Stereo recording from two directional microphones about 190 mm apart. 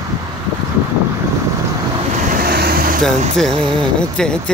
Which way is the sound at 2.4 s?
55° right (ahead or behind).